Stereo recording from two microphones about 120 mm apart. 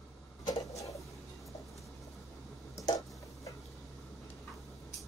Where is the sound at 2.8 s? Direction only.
30° left (ahead or behind).